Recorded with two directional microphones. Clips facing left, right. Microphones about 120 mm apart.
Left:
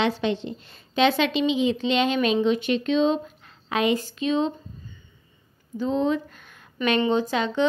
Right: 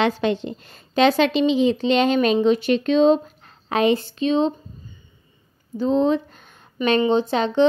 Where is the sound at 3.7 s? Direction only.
30° right (ahead or behind).